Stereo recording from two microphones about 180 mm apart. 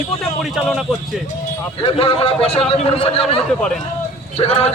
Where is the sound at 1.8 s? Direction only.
30° left (ahead or behind).